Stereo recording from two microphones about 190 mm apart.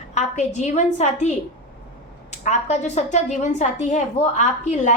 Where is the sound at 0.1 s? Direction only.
35° left (ahead or behind).